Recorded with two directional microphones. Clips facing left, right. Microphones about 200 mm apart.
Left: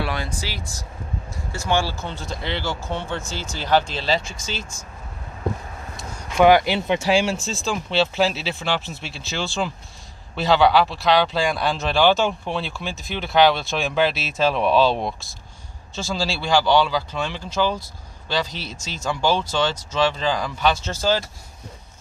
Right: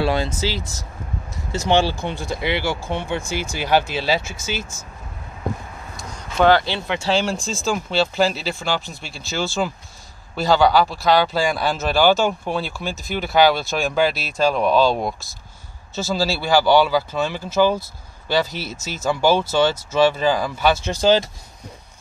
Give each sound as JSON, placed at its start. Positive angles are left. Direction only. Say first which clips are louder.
{"t": 0.0, "sound": "speech", "louder": "right 7 dB", "side_deg": -25}
{"t": 6.3, "sound": "speech", "louder": "left 1 dB", "side_deg": 15}